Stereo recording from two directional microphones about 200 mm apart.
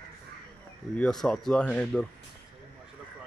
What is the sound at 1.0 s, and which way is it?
Speech, 5° left (ahead or behind).